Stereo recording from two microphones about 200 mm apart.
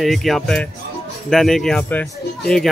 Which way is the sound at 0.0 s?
Centre (ahead or behind).